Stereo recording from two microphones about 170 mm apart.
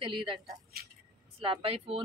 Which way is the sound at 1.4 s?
30° right (ahead or behind).